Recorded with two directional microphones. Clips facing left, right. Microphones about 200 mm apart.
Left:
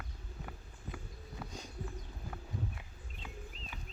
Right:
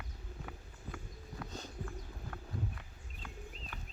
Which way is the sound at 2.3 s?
5° left (ahead or behind).